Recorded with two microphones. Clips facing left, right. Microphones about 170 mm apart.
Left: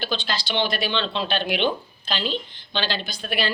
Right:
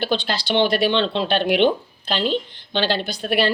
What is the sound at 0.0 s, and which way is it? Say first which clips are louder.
A woman's voice: right 5 dB; 60° right (ahead or behind).